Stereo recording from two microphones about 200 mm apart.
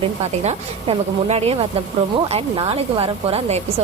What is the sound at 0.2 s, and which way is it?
Speech, 30° right (ahead or behind).